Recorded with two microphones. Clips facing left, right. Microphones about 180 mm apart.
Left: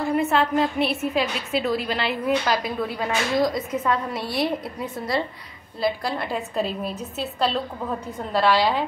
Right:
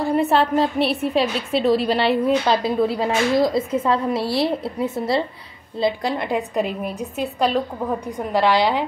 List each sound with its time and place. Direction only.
0.0 s a woman's voice: 35° right (ahead or behind); by 8.8 s 15° right (ahead or behind)